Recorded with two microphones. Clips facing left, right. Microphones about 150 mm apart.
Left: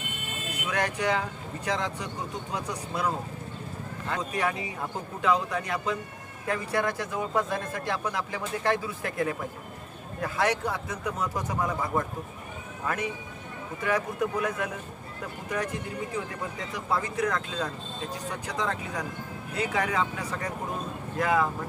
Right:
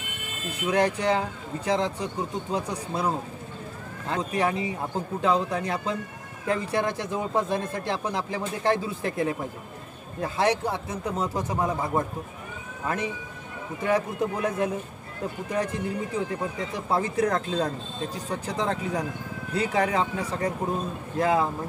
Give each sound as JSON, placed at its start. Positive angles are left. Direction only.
{"t": 0.7, "sound": "speech", "side_deg": -30}
{"t": 4.1, "sound": "speech", "side_deg": -30}
{"t": 16.7, "sound": "speech", "side_deg": -30}